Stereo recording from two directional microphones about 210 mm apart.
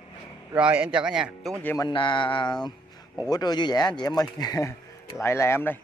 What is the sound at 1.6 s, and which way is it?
Speech, 10° left (ahead or behind).